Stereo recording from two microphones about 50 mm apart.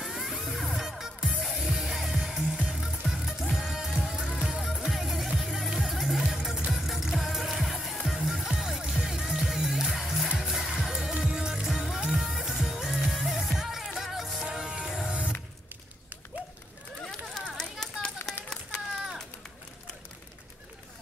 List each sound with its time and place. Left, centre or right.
0.0 s music: centre
15.0 s music: right
16.3 s run: right
17.0 s a sound: centre
17.6 s children playing: centre